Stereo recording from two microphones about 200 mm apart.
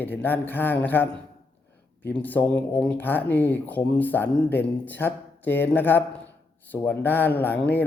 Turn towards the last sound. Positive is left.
turn(degrees=10)  # may be behind; listen again after turning